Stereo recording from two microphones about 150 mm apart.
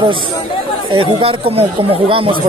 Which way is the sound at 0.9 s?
40° right (ahead or behind).